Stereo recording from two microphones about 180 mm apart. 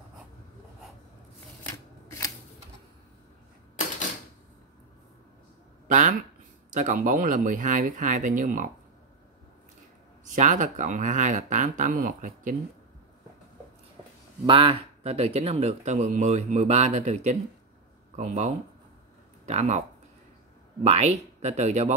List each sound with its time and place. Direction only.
5.9 s speech: 45° right (ahead or behind)
10.3 s speech: 45° right (ahead or behind)
14.4 s speech: 30° right (ahead or behind)
20.8 s speech: 40° right (ahead or behind)